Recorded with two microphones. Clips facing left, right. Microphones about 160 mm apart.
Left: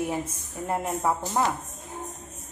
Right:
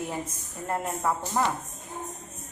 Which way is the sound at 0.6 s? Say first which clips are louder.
Left 2 dB; 15° left (ahead or behind).